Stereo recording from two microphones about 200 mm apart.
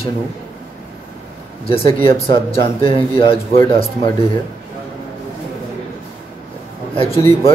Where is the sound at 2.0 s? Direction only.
30° left (ahead or behind).